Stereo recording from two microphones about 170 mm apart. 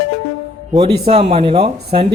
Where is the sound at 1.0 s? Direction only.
35° right (ahead or behind).